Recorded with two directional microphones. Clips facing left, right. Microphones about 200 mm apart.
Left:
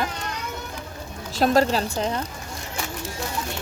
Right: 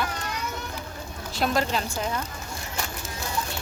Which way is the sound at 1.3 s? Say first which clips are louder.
Left 6 dB; 40° left (ahead or behind).